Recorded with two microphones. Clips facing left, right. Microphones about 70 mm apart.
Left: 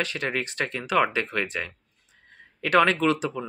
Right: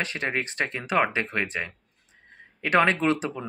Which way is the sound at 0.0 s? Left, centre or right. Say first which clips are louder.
Even; right.